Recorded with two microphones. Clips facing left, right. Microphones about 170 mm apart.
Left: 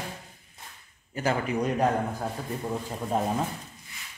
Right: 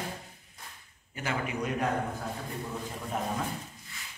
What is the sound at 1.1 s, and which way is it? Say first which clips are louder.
Speech: left 6 dB; 35° left (ahead or behind).